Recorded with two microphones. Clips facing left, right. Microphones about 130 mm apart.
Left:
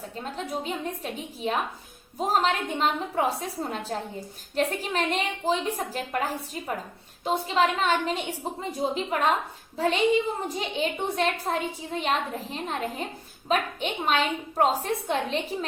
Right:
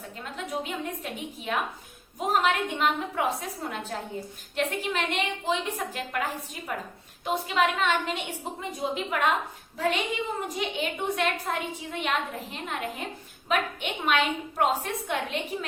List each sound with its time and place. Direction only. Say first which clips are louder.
0.2 s a woman's voice: left 1 dB; 35° left (ahead or behind)